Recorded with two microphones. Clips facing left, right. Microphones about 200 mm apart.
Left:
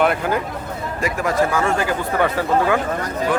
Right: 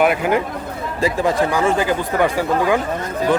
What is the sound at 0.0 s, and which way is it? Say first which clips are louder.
Speech: right 2 dB; 10° right (ahead or behind).